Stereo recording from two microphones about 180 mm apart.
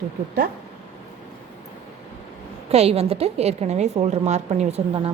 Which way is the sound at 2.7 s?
35° right (ahead or behind).